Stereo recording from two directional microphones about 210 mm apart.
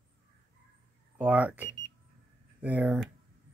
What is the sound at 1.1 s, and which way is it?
Speech, 5° right (ahead or behind).